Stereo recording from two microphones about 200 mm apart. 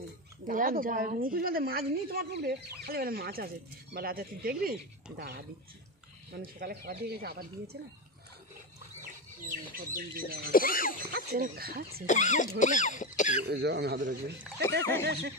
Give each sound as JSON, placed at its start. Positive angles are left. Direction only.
{"t": 0.5, "sound": "a woman's voice", "side_deg": -45}
{"t": 6.3, "sound": "a woman's voice", "side_deg": -50}
{"t": 9.0, "sound": "speech", "side_deg": -45}
{"t": 10.5, "sound": "a sound", "side_deg": 45}
{"t": 11.1, "sound": "a woman's voice", "side_deg": -50}
{"t": 12.1, "sound": "speech", "side_deg": 40}
{"t": 13.4, "sound": "a man's voice", "side_deg": -55}